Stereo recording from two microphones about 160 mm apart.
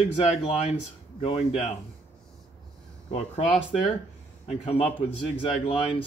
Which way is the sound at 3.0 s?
40° left (ahead or behind).